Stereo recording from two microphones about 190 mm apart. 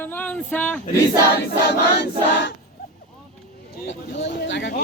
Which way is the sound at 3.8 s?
70° left (ahead or behind).